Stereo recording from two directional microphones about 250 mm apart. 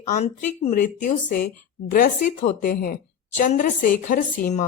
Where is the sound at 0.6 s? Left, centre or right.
Left.